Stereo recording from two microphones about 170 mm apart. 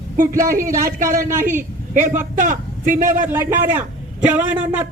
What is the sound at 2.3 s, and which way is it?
Speech, 50° right (ahead or behind).